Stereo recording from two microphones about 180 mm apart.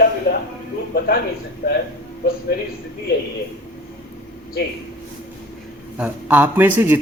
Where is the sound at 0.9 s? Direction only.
60° left (ahead or behind).